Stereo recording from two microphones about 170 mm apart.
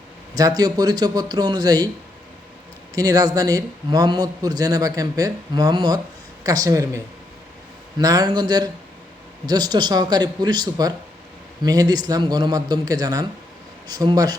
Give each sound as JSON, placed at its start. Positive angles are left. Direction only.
{"t": 0.3, "sound": "a man's voice", "side_deg": -20}
{"t": 2.9, "sound": "a man's voice", "side_deg": -20}